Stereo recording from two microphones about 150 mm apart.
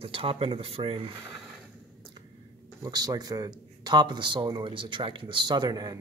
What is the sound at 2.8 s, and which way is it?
Speech, 25° right (ahead or behind).